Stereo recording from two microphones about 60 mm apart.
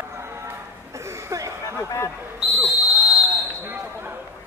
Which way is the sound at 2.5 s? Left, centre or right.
Centre.